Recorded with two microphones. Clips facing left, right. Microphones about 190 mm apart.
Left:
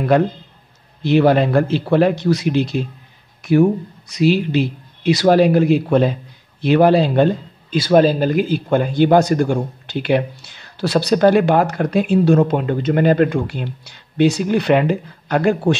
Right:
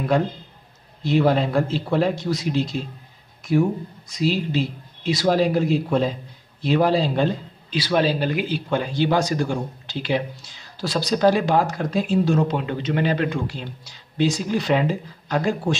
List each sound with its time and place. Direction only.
1.0 s speech: 70° left (ahead or behind)
4.1 s speech: 70° left (ahead or behind)
7.7 s speech: 45° left (ahead or behind); by 15.8 s 65° left (ahead or behind)